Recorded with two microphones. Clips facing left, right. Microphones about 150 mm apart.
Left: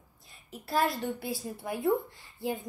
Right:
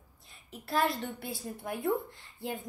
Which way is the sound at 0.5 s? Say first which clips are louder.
Left 1 dB; centre (ahead or behind).